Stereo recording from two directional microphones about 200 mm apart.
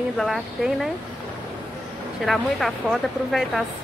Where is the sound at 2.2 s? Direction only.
Centre (ahead or behind).